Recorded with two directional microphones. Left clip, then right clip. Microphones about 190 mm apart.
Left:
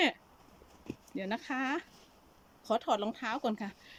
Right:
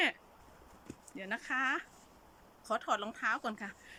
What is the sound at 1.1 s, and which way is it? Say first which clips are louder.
A woman's voice: even; 20° left (ahead or behind).